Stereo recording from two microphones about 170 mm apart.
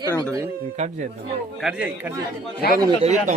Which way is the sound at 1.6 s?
5° right (ahead or behind).